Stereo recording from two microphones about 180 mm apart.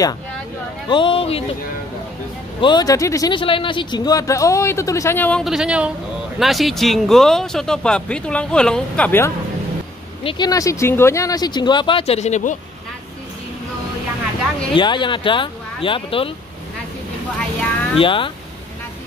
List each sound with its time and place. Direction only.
0.8 s speech: 25° left (ahead or behind)
2.6 s speech: 20° left (ahead or behind)
5.4 s speech: centre (ahead or behind)
10.2 s speech: 25° left (ahead or behind); by 12.5 s 40° left (ahead or behind)
14.7 s speech: 25° left (ahead or behind)
17.9 s speech: 30° left (ahead or behind)